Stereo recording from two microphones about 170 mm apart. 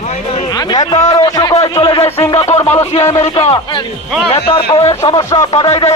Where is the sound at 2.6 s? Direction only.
15° left (ahead or behind).